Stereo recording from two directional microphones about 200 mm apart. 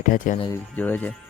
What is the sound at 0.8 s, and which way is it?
Speech, 10° left (ahead or behind).